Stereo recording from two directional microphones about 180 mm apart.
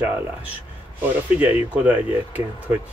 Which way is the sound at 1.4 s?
10° right (ahead or behind).